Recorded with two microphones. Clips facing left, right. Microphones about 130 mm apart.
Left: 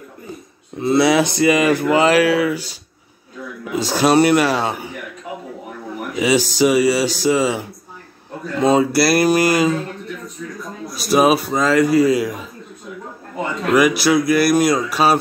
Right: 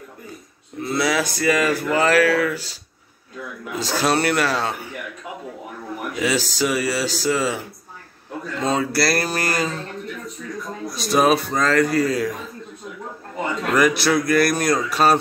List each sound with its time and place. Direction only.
0.7 s speech: 25° left (ahead or behind)
6.1 s speech: 15° left (ahead or behind)
11.0 s speech: 5° left (ahead or behind)
13.7 s speech: 5° left (ahead or behind)